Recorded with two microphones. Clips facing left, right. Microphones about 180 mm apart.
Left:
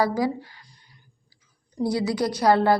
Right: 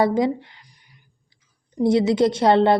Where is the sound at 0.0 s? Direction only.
25° right (ahead or behind).